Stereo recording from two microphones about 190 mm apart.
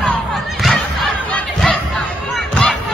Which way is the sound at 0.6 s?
Centre (ahead or behind).